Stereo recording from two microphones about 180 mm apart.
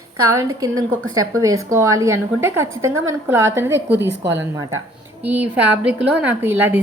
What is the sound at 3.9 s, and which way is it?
Speech, 70° right (ahead or behind).